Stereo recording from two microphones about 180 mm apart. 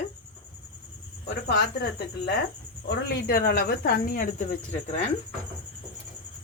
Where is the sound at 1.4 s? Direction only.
65° left (ahead or behind).